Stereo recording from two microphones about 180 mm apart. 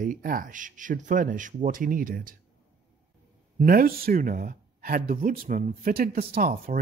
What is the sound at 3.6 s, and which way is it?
Speech, 55° right (ahead or behind).